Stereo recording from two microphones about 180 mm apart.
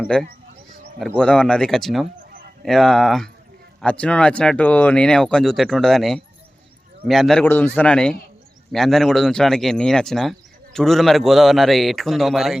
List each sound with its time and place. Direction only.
0.1 s speech: 5° left (ahead or behind)